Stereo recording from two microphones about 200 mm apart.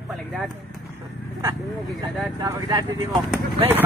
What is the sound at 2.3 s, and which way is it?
Speech, 20° right (ahead or behind).